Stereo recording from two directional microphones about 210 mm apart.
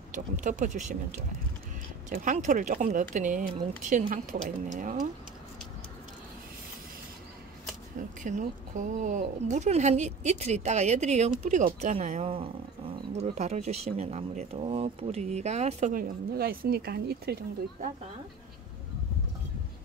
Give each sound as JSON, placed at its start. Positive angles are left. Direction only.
{"t": 0.1, "sound": "speech", "side_deg": -35}
{"t": 2.0, "sound": "speech", "side_deg": -40}
{"t": 8.2, "sound": "speech", "side_deg": -35}